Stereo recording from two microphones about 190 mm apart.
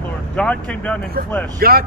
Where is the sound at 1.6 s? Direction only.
50° right (ahead or behind).